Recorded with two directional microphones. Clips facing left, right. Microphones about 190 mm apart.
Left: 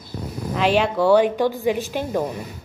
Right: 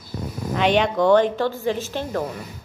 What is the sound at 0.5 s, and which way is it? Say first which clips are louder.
A woman's voice: even; 5° left (ahead or behind).